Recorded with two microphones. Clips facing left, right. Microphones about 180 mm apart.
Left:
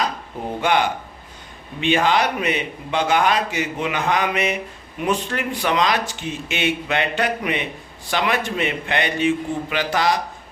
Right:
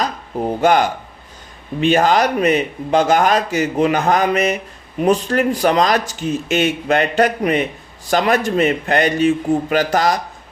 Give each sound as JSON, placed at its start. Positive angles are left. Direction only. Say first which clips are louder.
{"t": 0.6, "sound": "a man's voice", "louder": "right 5 dB", "side_deg": -45}